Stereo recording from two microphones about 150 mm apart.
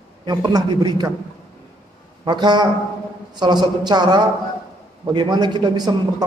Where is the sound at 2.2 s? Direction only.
30° right (ahead or behind).